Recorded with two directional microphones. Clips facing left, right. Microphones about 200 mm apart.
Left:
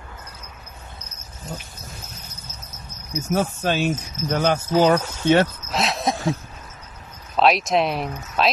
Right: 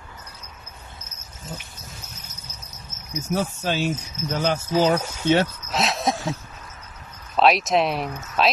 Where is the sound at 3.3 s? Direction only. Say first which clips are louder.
Left 3 dB; 55° left (ahead or behind).